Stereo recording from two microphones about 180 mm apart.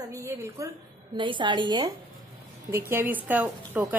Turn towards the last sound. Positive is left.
turn(degrees=-10)  # may be behind; listen again after turning